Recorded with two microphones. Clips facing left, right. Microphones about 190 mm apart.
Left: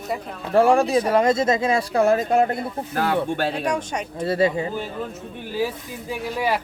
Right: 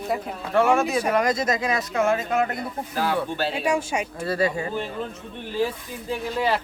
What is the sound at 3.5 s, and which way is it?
Speech, 5° right (ahead or behind).